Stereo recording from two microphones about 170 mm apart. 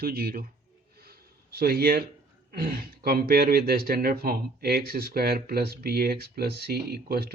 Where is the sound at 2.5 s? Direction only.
55° right (ahead or behind).